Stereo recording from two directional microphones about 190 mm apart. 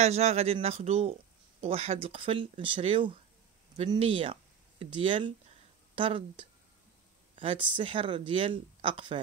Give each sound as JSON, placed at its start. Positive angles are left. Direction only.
{"t": 0.0, "sound": "speech", "side_deg": -35}